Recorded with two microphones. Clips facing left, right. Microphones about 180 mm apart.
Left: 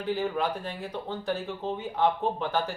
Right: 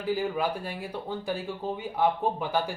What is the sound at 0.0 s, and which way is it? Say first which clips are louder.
Speech: even; 10° right (ahead or behind).